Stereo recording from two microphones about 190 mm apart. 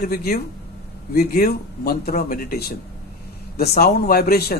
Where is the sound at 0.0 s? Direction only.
50° left (ahead or behind).